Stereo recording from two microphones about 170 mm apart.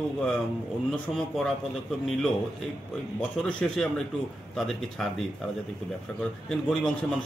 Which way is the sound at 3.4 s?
5° left (ahead or behind).